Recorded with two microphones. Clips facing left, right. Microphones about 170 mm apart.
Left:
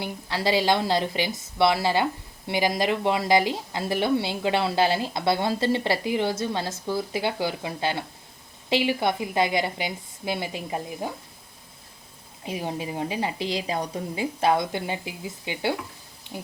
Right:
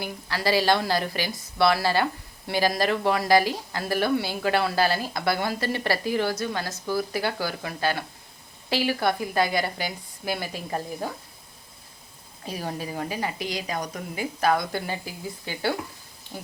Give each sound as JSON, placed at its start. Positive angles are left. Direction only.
{"t": 0.0, "sound": "speech", "side_deg": 25}
{"t": 12.5, "sound": "speech", "side_deg": 20}